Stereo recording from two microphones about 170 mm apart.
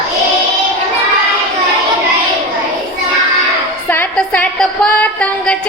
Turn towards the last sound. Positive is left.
turn(degrees=5)  # may be behind; listen again after turning